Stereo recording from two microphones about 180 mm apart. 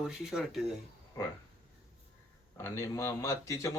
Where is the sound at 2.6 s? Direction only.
15° left (ahead or behind).